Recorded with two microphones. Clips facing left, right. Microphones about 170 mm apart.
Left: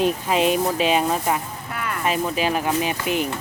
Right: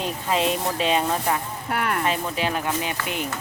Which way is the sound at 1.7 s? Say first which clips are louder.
Right 4 dB; 60° right (ahead or behind).